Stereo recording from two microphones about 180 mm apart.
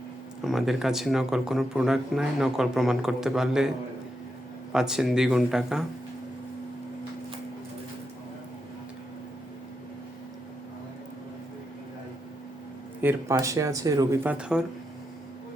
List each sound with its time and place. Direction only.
0.4 s speech: centre (ahead or behind)
4.7 s speech: 5° right (ahead or behind)
13.0 s speech: 10° right (ahead or behind)